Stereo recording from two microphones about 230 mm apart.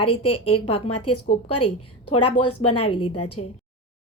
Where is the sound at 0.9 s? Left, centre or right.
Left.